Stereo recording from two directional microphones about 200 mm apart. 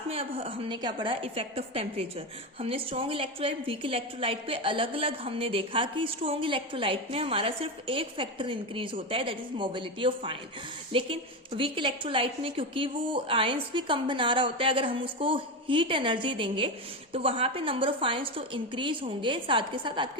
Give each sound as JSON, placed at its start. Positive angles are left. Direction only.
{"t": 0.1, "sound": "a woman's voice", "side_deg": -30}